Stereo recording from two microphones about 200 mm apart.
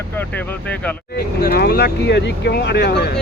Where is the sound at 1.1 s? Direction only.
55° left (ahead or behind).